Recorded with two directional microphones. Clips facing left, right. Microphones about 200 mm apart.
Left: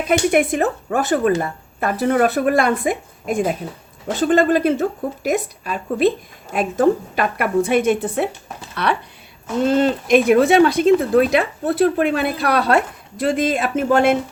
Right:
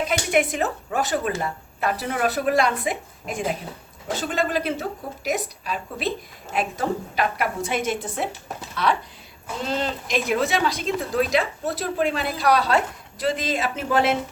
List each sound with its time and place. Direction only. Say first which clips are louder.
0.1 s speech: left 10 dB; 55° left (ahead or behind)